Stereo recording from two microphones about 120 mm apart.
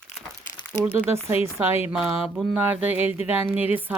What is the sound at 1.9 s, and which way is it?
A woman's voice, 5° right (ahead or behind).